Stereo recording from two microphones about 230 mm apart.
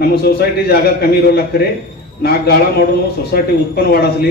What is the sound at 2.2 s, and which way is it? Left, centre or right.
A man's voice, left.